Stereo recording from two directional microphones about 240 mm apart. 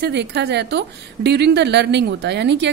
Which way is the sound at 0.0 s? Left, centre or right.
Right.